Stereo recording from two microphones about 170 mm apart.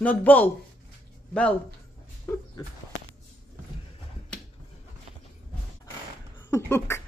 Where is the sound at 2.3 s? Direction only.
15° left (ahead or behind).